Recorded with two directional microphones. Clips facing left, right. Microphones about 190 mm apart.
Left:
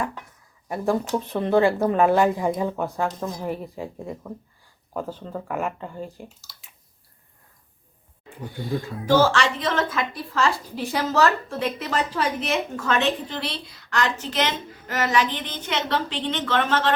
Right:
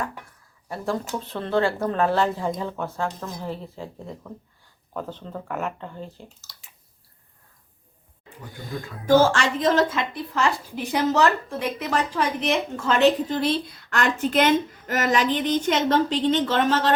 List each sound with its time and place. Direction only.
1.2 s a woman's voice: 15° left (ahead or behind)
9.0 s a woman's voice: 50° right (ahead or behind)
9.9 s speech: 20° right (ahead or behind)
12.7 s a woman's voice: 40° right (ahead or behind)